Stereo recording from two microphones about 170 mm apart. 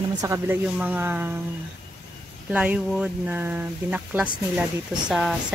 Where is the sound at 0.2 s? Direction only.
20° right (ahead or behind).